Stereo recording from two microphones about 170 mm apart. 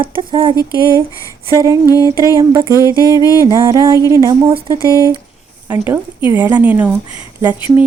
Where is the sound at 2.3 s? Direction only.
20° right (ahead or behind).